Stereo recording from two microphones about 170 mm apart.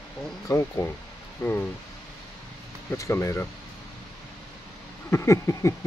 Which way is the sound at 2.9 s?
15° left (ahead or behind).